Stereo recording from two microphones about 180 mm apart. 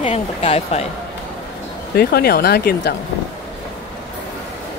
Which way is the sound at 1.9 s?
60° left (ahead or behind).